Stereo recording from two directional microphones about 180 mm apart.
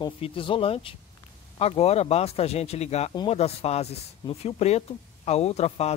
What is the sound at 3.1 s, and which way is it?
Speech, 25° left (ahead or behind).